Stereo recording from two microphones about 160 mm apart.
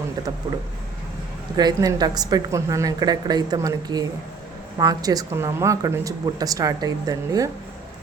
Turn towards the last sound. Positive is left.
turn(degrees=-25)  # may be behind; listen again after turning